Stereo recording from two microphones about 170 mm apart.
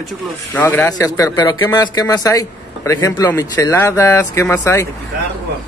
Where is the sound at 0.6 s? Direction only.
10° left (ahead or behind).